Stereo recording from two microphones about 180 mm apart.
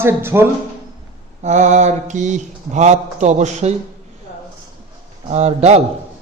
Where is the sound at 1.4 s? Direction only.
40° right (ahead or behind).